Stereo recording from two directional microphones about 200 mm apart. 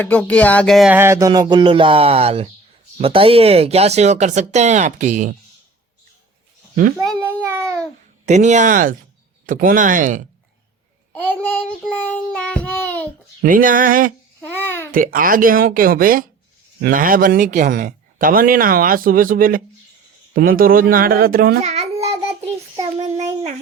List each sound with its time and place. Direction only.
0.0 s music: 5° left (ahead or behind); by 2.5 s 30° right (ahead or behind)
3.0 s speech: 30° right (ahead or behind)
6.9 s a child's voice: centre (ahead or behind)
7.4 s babbling: 15° right (ahead or behind)
8.3 s speech: 35° right (ahead or behind)
11.1 s child singing: 5° left (ahead or behind)
13.4 s speech: 45° right (ahead or behind)
14.4 s babbling: 10° left (ahead or behind)
14.9 s speech: 45° right (ahead or behind)
21.6 s a child's voice: 35° right (ahead or behind)
22.0 s child singing: 30° right (ahead or behind)